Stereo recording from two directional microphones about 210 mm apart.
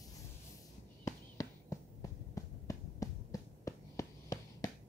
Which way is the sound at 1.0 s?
15° left (ahead or behind).